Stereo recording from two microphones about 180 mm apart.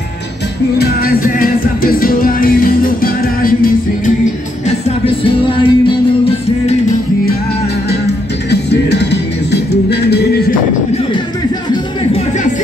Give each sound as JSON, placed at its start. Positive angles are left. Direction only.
{"t": 0.7, "sound": "music", "side_deg": 55}
{"t": 4.6, "sound": "music", "side_deg": 30}
{"t": 8.5, "sound": "music", "side_deg": 70}